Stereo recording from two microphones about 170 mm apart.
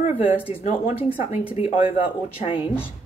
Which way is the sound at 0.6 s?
40° left (ahead or behind).